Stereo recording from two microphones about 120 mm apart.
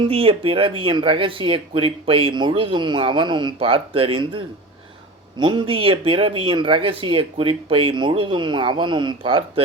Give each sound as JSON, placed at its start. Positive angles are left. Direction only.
{"t": 0.0, "sound": "speech", "side_deg": -50}